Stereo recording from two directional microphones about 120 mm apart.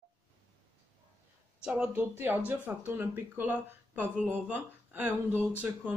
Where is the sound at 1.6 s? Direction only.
5° right (ahead or behind).